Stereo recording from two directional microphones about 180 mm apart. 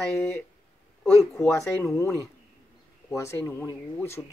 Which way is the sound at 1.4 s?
15° left (ahead or behind).